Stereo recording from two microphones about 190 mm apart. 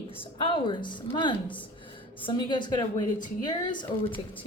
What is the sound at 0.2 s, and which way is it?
Speech, 25° left (ahead or behind).